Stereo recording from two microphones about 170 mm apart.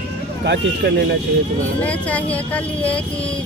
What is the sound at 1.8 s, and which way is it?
Speech, 10° left (ahead or behind).